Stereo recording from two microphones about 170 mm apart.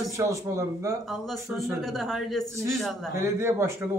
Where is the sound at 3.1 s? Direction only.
15° right (ahead or behind).